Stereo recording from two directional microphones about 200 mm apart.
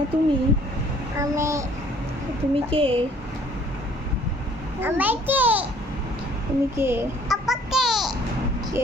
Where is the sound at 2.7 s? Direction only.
30° right (ahead or behind).